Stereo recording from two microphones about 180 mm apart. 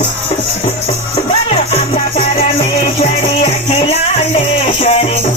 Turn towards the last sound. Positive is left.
turn(degrees=35)  # may be behind; listen again after turning